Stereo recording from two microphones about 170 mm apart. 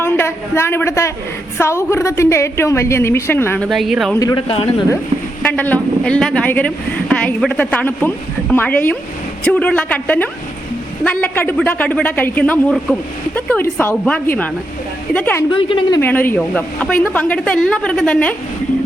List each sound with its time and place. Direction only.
0.0 s a woman's voice: 15° left (ahead or behind)
3.7 s speech: centre (ahead or behind)
4.2 s a woman's voice: 20° left (ahead or behind)
4.4 s a man's voice: 30° left (ahead or behind)
5.4 s a woman's voice: 10° left (ahead or behind)
15.5 s a woman's voice: 30° left (ahead or behind)
16.0 s a woman's voice: 10° left (ahead or behind)